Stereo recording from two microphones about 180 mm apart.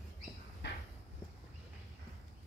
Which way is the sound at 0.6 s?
70° left (ahead or behind).